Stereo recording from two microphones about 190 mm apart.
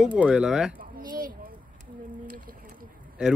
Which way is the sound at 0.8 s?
45° right (ahead or behind).